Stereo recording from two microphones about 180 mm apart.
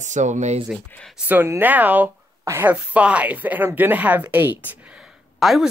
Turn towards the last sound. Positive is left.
turn(degrees=0)  # may be behind; listen again after turning